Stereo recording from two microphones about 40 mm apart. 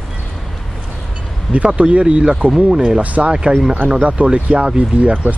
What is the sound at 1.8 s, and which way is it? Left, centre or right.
Speech, right.